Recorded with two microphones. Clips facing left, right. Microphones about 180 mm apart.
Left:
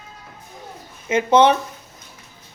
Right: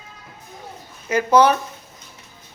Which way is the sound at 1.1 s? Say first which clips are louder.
Left 1 dB; 25° left (ahead or behind).